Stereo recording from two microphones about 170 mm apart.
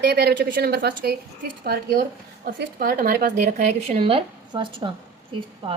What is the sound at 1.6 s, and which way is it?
A woman's voice, 70° right (ahead or behind).